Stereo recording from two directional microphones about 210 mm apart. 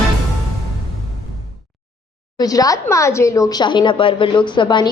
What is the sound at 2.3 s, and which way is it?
A woman's voice, 15° left (ahead or behind).